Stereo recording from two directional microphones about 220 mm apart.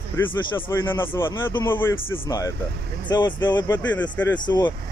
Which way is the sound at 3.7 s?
5° left (ahead or behind).